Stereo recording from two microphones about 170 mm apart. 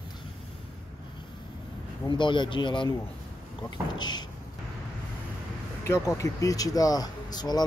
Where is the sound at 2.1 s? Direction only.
25° left (ahead or behind).